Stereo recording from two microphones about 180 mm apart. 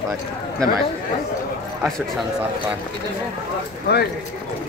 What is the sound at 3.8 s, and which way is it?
Speech, 65° left (ahead or behind).